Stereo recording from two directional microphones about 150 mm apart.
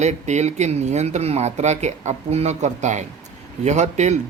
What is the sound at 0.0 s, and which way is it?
Speech, 50° right (ahead or behind).